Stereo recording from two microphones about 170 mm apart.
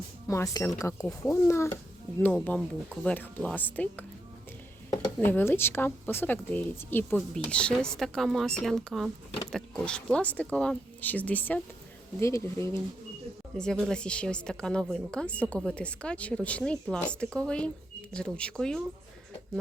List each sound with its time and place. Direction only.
0.3 s speech: 20° left (ahead or behind)
5.2 s speech: 10° left (ahead or behind)
13.6 s speech: 5° left (ahead or behind)